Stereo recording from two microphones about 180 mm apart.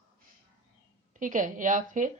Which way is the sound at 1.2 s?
45° right (ahead or behind).